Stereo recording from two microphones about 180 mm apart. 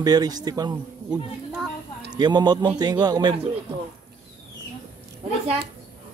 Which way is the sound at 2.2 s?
25° right (ahead or behind).